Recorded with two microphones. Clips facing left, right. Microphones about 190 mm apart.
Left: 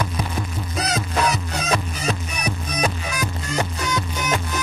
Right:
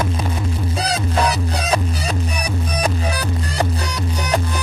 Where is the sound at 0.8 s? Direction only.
35° right (ahead or behind).